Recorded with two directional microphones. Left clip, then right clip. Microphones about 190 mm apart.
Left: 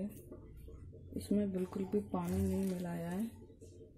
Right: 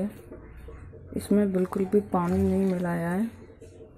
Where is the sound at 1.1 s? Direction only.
Centre (ahead or behind).